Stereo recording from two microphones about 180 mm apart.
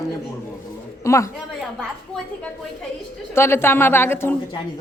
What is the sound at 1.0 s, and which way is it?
Speech, 15° left (ahead or behind).